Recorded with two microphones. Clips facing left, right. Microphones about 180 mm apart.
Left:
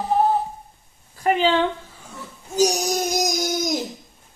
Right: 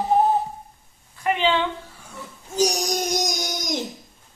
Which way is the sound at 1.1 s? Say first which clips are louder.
Left 3 dB; 35° left (ahead or behind).